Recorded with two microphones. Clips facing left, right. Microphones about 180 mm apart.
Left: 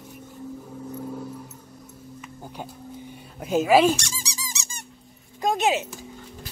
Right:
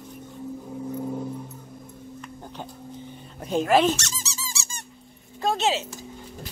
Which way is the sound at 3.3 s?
5° left (ahead or behind).